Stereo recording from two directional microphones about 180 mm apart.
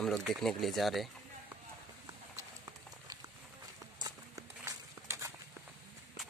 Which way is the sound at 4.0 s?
20° right (ahead or behind).